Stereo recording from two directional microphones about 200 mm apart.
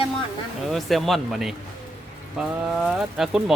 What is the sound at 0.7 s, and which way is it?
Speech, centre (ahead or behind).